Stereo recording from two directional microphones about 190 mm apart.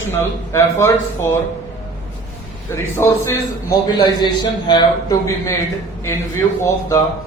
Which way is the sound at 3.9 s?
25° left (ahead or behind).